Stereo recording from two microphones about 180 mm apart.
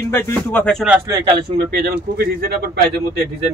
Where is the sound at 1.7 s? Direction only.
60° right (ahead or behind).